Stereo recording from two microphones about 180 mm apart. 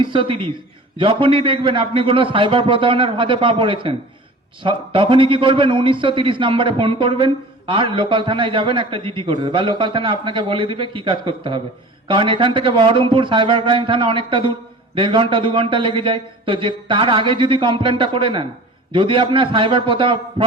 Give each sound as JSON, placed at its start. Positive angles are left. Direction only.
{"t": 0.0, "sound": "a man's voice", "side_deg": -30}